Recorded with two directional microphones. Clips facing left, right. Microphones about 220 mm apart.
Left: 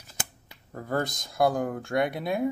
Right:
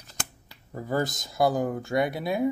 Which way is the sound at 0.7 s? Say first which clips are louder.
Right 2 dB; 5° right (ahead or behind).